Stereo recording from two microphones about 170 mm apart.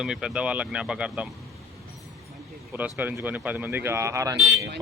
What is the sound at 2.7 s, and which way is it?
Speech, 10° right (ahead or behind).